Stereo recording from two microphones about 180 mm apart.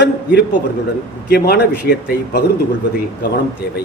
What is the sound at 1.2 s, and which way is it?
A man's voice, 65° left (ahead or behind).